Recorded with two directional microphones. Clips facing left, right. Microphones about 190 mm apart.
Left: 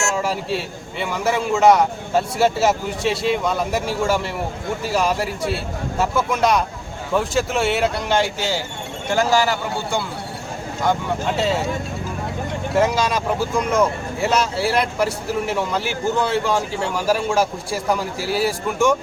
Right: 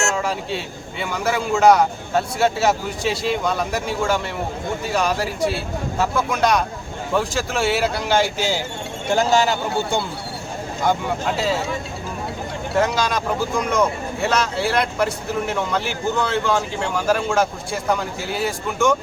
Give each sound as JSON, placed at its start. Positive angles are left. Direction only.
{"t": 0.2, "sound": "a man's voice", "side_deg": 5}
{"t": 12.7, "sound": "speech", "side_deg": 5}